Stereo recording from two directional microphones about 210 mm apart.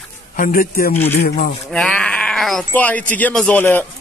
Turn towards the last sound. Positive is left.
turn(degrees=10)  # may be behind; listen again after turning